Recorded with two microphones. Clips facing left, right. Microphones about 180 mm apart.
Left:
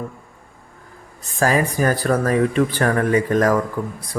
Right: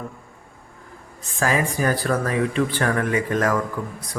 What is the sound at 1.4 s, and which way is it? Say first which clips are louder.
A man's voice: left 4 dB; 40° left (ahead or behind).